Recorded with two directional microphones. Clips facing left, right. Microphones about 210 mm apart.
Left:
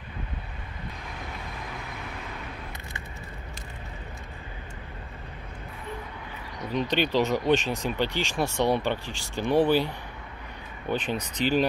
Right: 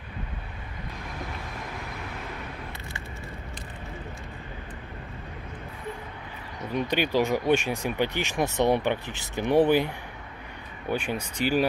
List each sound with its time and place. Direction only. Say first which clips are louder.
6.7 s speech: even; 10° right (ahead or behind)